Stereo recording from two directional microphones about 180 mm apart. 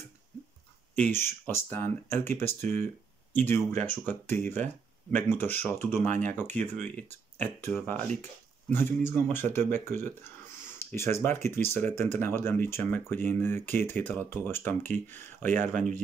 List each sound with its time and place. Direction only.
0.9 s speech: 10° left (ahead or behind)
6.6 s speech: 40° right (ahead or behind)
7.0 s speech: 10° left (ahead or behind)